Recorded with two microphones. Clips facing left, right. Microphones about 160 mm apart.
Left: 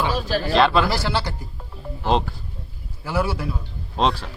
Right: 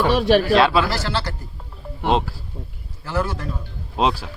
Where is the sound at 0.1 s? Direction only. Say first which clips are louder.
Right 8 dB; 75° right (ahead or behind).